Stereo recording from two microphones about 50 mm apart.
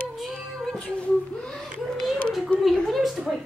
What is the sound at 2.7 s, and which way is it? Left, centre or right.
Speech, centre.